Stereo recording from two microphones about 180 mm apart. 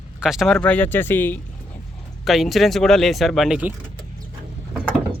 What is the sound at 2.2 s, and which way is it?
Speech, centre (ahead or behind).